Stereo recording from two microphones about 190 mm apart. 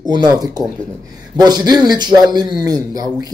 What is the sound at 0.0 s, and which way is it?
A man's voice, 20° right (ahead or behind).